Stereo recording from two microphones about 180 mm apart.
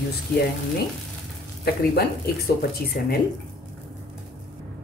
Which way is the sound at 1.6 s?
60° left (ahead or behind).